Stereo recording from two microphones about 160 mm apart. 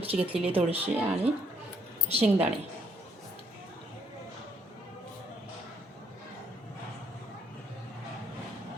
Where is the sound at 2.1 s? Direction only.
40° right (ahead or behind).